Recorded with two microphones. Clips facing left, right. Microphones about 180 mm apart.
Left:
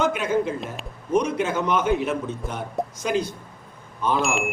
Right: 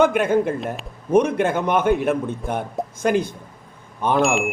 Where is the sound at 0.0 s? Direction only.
55° right (ahead or behind).